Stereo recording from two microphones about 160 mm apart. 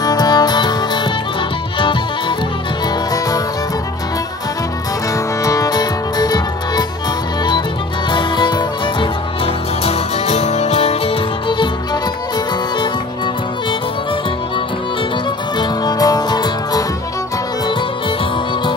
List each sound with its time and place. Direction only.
0.0 s music: 25° left (ahead or behind)
5.4 s music: 20° left (ahead or behind)
8.1 s music: 30° left (ahead or behind)
9.8 s music: 40° left (ahead or behind)
15.8 s music: 25° left (ahead or behind)